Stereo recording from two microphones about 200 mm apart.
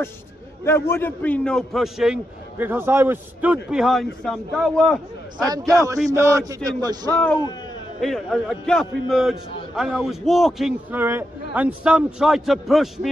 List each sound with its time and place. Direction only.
0.7 s a man's voice: 10° left (ahead or behind)
6.1 s a man's voice: 15° right (ahead or behind)
7.1 s a man's voice: 10° left (ahead or behind)